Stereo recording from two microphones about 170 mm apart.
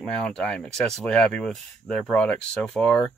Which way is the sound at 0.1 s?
5° left (ahead or behind).